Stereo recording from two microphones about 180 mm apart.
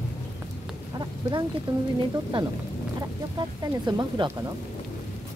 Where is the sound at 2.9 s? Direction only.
20° right (ahead or behind).